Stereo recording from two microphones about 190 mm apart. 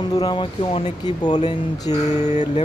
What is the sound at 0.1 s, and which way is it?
Speech, 20° left (ahead or behind).